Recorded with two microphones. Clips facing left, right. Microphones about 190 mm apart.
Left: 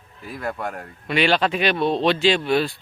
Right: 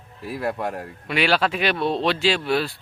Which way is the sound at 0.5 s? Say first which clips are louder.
Right 2 dB; 25° right (ahead or behind).